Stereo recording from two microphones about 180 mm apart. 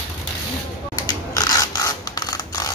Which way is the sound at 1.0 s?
20° left (ahead or behind).